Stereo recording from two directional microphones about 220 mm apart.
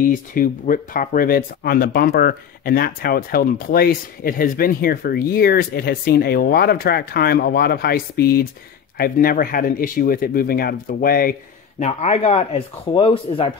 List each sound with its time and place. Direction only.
0.0 s speech: 40° left (ahead or behind)
11.8 s speech: 30° left (ahead or behind)